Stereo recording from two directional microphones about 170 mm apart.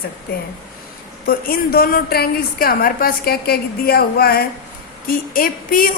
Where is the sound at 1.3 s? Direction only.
60° left (ahead or behind).